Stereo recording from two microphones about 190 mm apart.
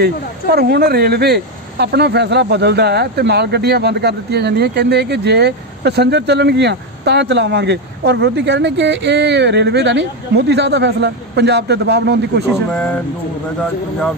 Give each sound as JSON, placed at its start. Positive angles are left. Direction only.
{"t": 0.0, "sound": "speech", "side_deg": -55}